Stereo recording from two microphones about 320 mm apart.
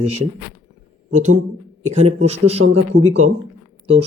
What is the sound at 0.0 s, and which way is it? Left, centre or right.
Speech, right.